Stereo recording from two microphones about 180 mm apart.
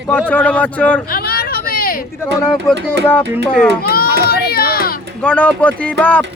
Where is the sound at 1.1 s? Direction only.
55° left (ahead or behind).